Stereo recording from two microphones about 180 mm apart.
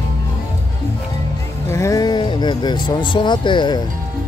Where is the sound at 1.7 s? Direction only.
15° left (ahead or behind).